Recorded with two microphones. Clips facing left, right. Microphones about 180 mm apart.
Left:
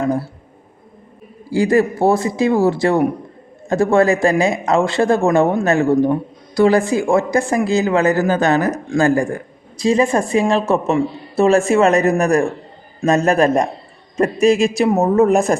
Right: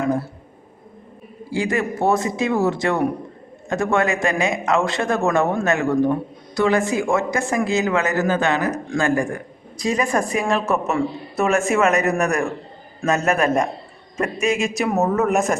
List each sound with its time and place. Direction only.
1.5 s speech: 35° left (ahead or behind)